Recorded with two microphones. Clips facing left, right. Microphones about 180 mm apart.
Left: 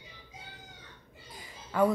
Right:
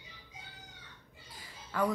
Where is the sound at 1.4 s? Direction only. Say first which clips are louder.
Left 6 dB; 20° left (ahead or behind).